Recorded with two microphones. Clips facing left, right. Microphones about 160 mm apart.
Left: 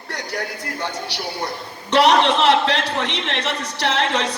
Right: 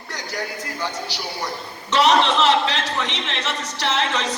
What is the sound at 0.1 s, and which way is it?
A man's voice, 65° left (ahead or behind).